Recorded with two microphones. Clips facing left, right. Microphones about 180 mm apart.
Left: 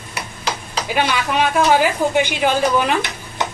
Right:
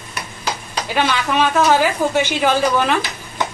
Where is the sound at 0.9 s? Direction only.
10° left (ahead or behind).